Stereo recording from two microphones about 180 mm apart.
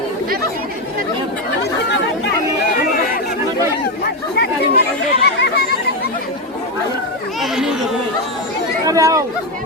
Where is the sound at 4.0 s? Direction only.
65° left (ahead or behind).